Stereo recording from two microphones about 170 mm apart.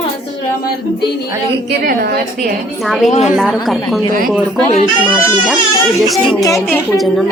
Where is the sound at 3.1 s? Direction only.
40° left (ahead or behind).